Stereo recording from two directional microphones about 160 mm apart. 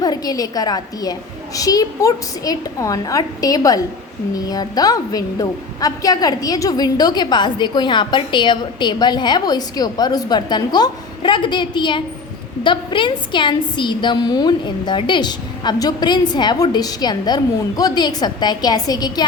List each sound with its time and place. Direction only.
0.0 s a woman's voice: 25° left (ahead or behind)